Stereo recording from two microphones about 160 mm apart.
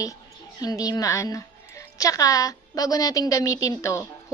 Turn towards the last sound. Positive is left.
turn(degrees=20)  # may be behind; listen again after turning